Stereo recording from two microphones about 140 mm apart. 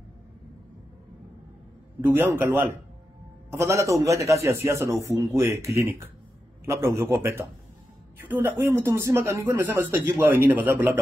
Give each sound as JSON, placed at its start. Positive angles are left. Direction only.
{"t": 2.0, "sound": "a man's voice", "side_deg": -15}